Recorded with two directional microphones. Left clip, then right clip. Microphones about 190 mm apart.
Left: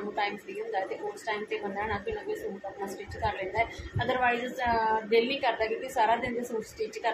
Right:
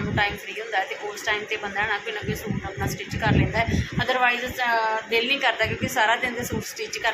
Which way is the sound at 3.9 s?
10° left (ahead or behind).